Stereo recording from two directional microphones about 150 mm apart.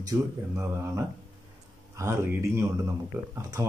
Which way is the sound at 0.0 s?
20° right (ahead or behind).